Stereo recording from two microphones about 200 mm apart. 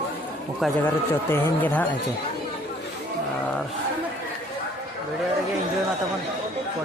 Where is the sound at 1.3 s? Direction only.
10° left (ahead or behind).